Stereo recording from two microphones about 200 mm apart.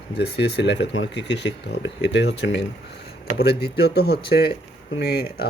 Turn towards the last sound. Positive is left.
turn(degrees=55)  # may be behind; listen again after turning